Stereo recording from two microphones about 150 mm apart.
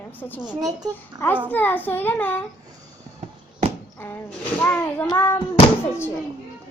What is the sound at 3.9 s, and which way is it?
A woman's voice, 15° left (ahead or behind).